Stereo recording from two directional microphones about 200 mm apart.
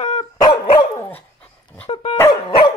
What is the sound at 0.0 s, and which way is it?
Dog, 30° left (ahead or behind).